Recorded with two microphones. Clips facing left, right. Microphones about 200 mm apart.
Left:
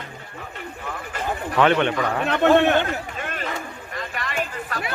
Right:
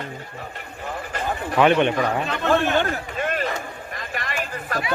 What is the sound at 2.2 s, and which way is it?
Speech, 60° left (ahead or behind).